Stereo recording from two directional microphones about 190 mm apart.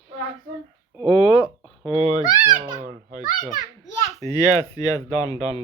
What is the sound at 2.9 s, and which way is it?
Speech, 40° right (ahead or behind).